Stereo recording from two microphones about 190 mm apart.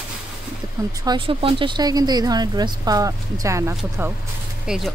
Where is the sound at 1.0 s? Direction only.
25° right (ahead or behind).